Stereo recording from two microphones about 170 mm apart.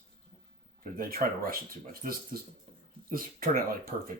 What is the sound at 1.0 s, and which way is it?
Speech, 60° right (ahead or behind).